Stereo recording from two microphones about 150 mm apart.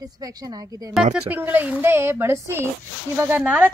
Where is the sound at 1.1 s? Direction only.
10° right (ahead or behind).